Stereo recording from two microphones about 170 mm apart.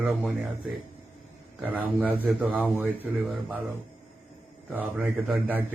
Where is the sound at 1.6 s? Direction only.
10° right (ahead or behind).